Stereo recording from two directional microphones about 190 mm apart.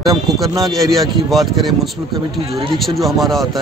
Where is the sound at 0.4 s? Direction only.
Centre (ahead or behind).